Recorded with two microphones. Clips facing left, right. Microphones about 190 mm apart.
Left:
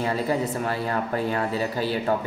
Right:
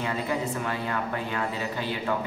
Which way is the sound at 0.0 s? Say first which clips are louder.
Left 4 dB; 35° left (ahead or behind).